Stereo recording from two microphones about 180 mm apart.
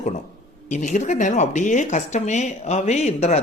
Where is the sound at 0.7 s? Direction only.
40° left (ahead or behind).